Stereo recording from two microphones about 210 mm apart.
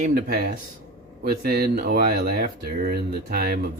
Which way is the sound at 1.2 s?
45° right (ahead or behind).